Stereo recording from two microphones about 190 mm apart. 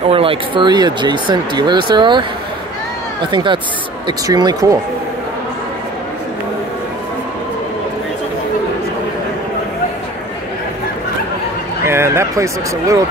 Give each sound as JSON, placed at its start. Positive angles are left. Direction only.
{"t": 0.1, "sound": "speech", "side_deg": -30}
{"t": 11.8, "sound": "speech", "side_deg": -15}